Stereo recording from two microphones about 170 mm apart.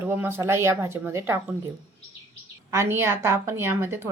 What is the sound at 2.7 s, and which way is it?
A woman's voice, 15° right (ahead or behind).